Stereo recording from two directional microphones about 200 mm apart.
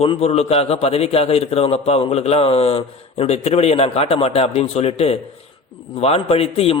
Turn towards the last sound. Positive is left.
turn(degrees=30)  # may be behind; listen again after turning